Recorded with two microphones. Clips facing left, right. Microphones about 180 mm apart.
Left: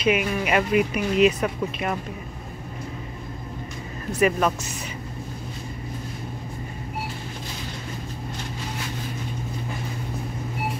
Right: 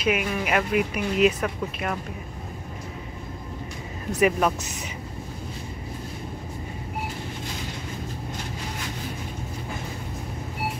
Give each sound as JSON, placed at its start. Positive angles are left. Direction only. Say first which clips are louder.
{"t": 0.0, "sound": "speech", "louder": "left 2 dB", "side_deg": 0}
{"t": 4.2, "sound": "speech", "louder": "even", "side_deg": -10}